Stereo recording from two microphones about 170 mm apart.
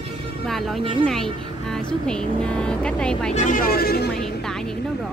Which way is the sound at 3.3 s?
50° left (ahead or behind).